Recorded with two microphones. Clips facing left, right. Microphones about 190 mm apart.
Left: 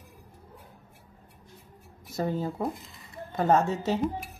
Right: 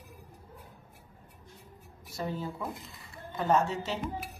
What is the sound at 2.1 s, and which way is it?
Speech, 45° left (ahead or behind).